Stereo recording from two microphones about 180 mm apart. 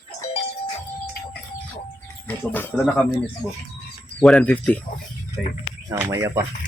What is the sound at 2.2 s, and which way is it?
Speech, 10° left (ahead or behind).